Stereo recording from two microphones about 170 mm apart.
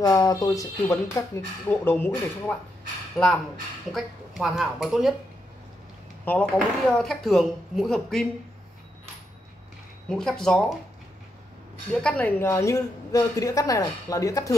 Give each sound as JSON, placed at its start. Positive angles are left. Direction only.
{"t": 0.0, "sound": "a woman's voice", "side_deg": 20}
{"t": 6.2, "sound": "speech", "side_deg": 5}
{"t": 10.0, "sound": "speech", "side_deg": 5}
{"t": 11.9, "sound": "a woman's voice", "side_deg": 5}